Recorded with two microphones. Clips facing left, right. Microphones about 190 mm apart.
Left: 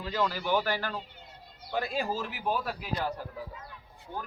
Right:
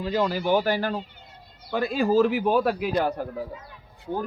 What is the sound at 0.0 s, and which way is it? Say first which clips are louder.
Speech: right 6 dB; 15° right (ahead or behind).